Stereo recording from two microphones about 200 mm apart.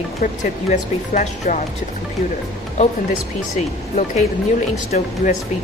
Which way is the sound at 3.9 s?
35° left (ahead or behind).